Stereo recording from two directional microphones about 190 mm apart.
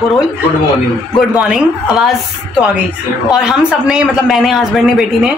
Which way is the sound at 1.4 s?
5° right (ahead or behind).